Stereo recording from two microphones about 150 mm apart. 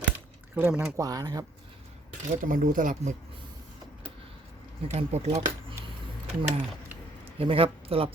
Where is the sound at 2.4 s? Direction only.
65° right (ahead or behind).